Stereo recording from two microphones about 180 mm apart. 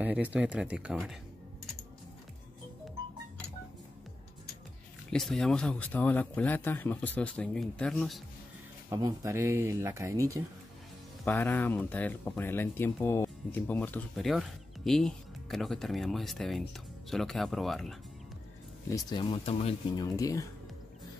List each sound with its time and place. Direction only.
0.0 s speech: 10° right (ahead or behind)
5.1 s speech: centre (ahead or behind)
8.9 s speech: 15° right (ahead or behind)
11.2 s speech: 10° left (ahead or behind)
18.9 s speech: 20° left (ahead or behind)
20.0 s speech: 20° left (ahead or behind)